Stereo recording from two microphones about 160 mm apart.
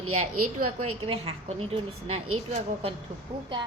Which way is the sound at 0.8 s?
40° right (ahead or behind).